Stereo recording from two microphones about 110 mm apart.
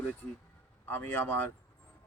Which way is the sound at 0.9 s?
15° left (ahead or behind).